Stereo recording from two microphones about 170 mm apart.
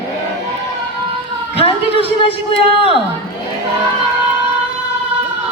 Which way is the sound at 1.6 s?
35° left (ahead or behind).